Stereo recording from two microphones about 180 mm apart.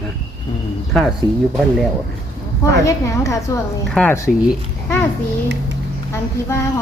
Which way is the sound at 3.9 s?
5° left (ahead or behind).